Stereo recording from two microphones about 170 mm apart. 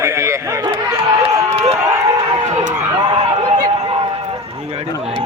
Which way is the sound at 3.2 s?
35° right (ahead or behind).